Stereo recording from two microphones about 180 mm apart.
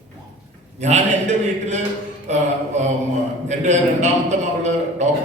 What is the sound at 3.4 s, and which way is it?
Speech, 40° right (ahead or behind).